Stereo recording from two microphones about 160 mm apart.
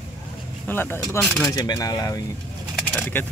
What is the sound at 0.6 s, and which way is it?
Speech, 15° left (ahead or behind).